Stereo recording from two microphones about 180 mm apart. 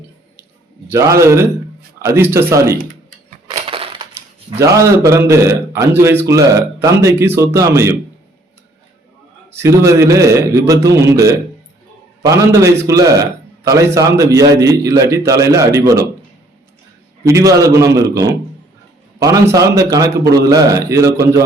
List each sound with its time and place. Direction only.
0.9 s a man's voice: 15° right (ahead or behind)
2.7 s typing: 50° right (ahead or behind)
3.5 s crushing: 30° right (ahead or behind)
4.5 s a man's voice: 15° right (ahead or behind)
9.5 s a man's voice: 15° right (ahead or behind)
17.2 s a man's voice: 20° right (ahead or behind)